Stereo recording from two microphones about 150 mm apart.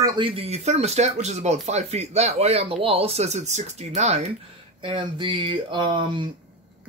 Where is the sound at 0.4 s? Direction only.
45° right (ahead or behind).